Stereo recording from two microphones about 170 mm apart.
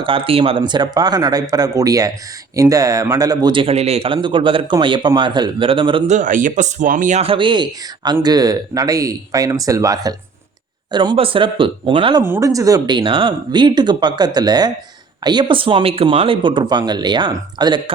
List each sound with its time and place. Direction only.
0.0 s speech: 30° right (ahead or behind)
6.1 s speech: 50° right (ahead or behind)
7.2 s speech: 30° right (ahead or behind)
12.2 s speech: 15° right (ahead or behind)